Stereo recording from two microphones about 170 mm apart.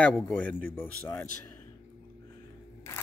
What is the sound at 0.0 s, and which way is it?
Speech, 5° left (ahead or behind).